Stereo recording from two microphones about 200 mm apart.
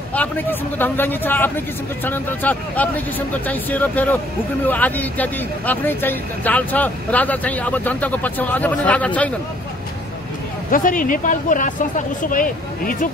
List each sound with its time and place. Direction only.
0.1 s speech: 10° left (ahead or behind)
10.7 s speech: 45° left (ahead or behind)